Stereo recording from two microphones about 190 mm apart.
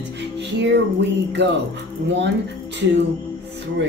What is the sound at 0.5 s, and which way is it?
Speech, 65° right (ahead or behind).